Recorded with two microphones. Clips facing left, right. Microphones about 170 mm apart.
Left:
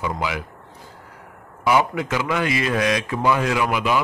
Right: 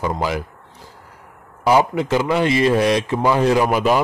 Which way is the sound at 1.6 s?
30° right (ahead or behind).